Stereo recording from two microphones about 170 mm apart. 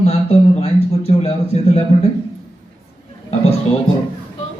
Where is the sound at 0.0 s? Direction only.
40° left (ahead or behind).